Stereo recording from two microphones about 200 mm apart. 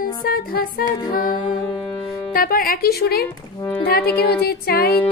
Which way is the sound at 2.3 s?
45° left (ahead or behind).